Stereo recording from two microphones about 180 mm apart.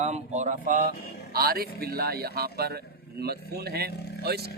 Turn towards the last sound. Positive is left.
turn(degrees=-60)  # may be behind; listen again after turning